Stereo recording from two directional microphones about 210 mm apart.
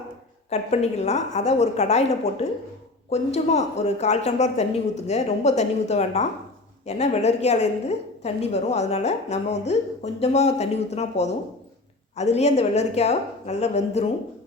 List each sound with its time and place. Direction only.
0.5 s a woman's voice: 30° left (ahead or behind)